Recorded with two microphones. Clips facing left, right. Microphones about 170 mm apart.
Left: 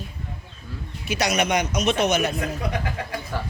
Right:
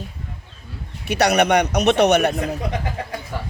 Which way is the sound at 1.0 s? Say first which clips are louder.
Right 6 dB; 65° right (ahead or behind).